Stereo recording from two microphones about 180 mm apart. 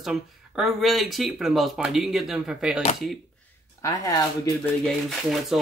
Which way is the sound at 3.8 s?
20° left (ahead or behind).